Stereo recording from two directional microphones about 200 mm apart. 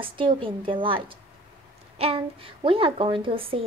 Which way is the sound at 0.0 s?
25° right (ahead or behind).